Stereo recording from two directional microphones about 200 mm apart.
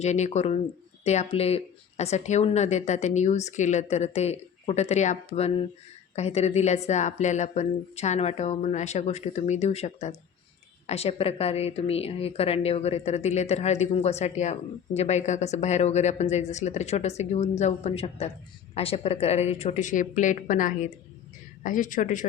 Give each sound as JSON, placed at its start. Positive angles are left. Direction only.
{"t": 0.0, "sound": "a woman's voice", "side_deg": 35}